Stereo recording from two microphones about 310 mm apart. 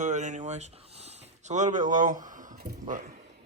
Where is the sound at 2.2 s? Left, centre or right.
Right.